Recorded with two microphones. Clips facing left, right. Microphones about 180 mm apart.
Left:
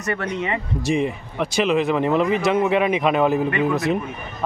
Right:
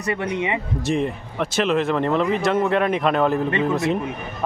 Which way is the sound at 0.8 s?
Centre (ahead or behind).